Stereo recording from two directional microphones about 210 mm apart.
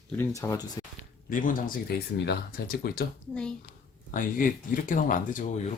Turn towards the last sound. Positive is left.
turn(degrees=40)  # may be behind; listen again after turning